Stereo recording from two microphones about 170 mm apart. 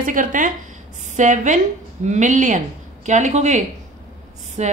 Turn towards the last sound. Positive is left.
turn(degrees=-45)  # may be behind; listen again after turning